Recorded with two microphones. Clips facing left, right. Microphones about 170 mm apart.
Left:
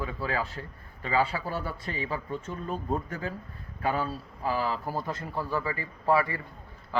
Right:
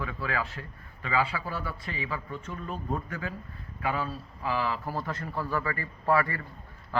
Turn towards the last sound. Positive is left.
turn(degrees=10)  # may be behind; listen again after turning